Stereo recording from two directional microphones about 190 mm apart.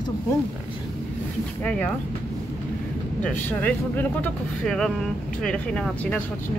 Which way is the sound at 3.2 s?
10° left (ahead or behind).